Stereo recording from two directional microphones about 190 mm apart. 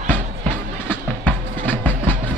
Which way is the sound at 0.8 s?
10° left (ahead or behind).